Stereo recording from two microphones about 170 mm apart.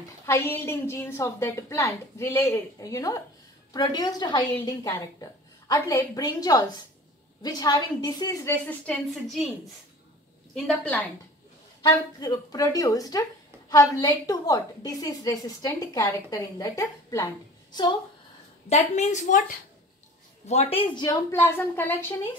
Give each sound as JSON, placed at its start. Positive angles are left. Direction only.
{"t": 0.3, "sound": "a woman's voice", "side_deg": 15}
{"t": 10.5, "sound": "a woman's voice", "side_deg": 5}
{"t": 12.2, "sound": "a woman's voice", "side_deg": 20}
{"t": 18.7, "sound": "a woman's voice", "side_deg": 45}
{"t": 20.4, "sound": "a woman's voice", "side_deg": 35}
{"t": 21.3, "sound": "a woman's voice", "side_deg": 15}